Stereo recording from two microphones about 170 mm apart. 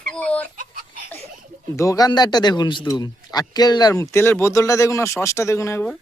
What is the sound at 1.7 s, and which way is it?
Speech, 20° left (ahead or behind).